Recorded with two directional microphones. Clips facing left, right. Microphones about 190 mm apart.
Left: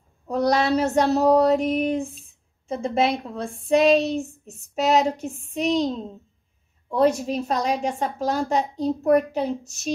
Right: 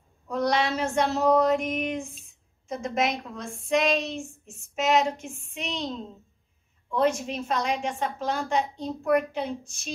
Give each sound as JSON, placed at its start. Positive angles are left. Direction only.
{"t": 0.3, "sound": "a woman's voice", "side_deg": 35}